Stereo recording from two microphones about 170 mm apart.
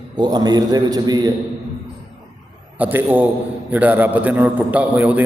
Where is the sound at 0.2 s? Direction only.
25° right (ahead or behind).